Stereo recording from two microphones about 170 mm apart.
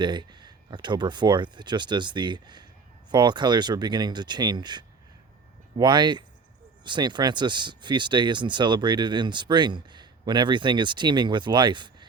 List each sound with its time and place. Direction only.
0.0 s speech: 25° right (ahead or behind)